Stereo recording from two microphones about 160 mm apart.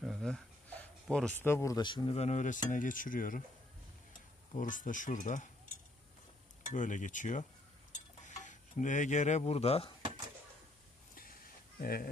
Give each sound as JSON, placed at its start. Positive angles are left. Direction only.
{"t": 0.0, "sound": "a sound", "side_deg": 0}
{"t": 1.4, "sound": "speech", "side_deg": 15}
{"t": 2.1, "sound": "speech", "side_deg": 45}
{"t": 4.5, "sound": "speech", "side_deg": 55}
{"t": 6.7, "sound": "speech", "side_deg": 50}
{"t": 8.2, "sound": "a sound", "side_deg": 50}
{"t": 11.8, "sound": "speech", "side_deg": 65}